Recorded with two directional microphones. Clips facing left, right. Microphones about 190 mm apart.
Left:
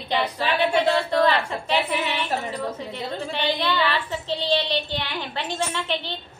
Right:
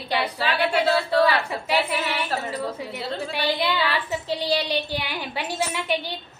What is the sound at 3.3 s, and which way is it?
Child singing, 10° right (ahead or behind).